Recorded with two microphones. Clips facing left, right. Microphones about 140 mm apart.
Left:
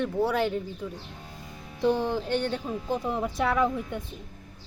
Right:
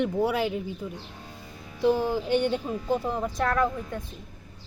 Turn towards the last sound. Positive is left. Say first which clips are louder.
# even
turn(degrees=5)  # may be behind; listen again after turning